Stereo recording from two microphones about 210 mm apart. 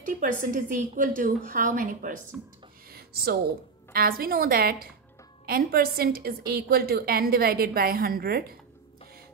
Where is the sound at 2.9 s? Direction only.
45° right (ahead or behind).